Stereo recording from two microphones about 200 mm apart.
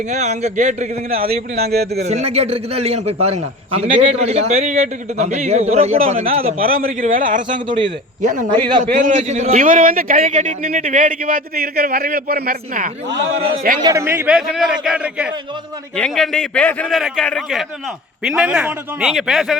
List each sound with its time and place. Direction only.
0.1 s a man's voice: 35° right (ahead or behind); by 2.0 s 55° right (ahead or behind)
2.0 s a man's voice: 35° right (ahead or behind)
6.6 s a man's voice: 45° right (ahead or behind)
13.1 s a man's voice: 60° right (ahead or behind)
13.8 s a man's voice: 15° right (ahead or behind)